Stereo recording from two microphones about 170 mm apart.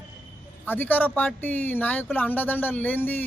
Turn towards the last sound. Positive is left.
turn(degrees=10)  # may be behind; listen again after turning